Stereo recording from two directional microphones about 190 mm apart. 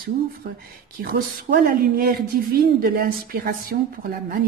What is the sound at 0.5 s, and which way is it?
A woman's voice, 50° right (ahead or behind).